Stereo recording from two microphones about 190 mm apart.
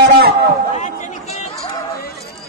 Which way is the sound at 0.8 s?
40° left (ahead or behind).